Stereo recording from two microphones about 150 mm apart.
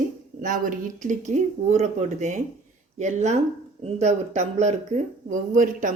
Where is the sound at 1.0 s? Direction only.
55° right (ahead or behind).